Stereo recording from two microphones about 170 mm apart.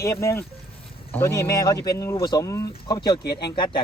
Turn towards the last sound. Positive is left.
turn(degrees=30)  # may be behind; listen again after turning